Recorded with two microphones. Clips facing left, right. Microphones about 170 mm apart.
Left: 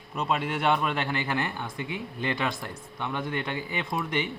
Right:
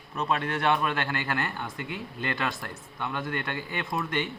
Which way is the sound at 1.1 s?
10° left (ahead or behind).